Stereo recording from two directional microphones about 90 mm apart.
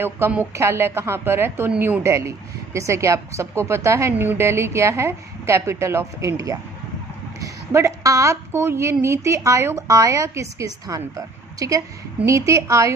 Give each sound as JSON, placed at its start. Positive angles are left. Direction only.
{"t": 0.6, "sound": "a woman's voice", "side_deg": -30}